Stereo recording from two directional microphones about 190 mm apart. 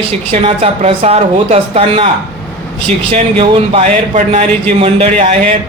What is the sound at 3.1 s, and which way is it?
Speech, 30° right (ahead or behind).